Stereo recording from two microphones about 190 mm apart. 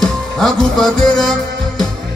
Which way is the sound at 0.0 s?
Centre (ahead or behind).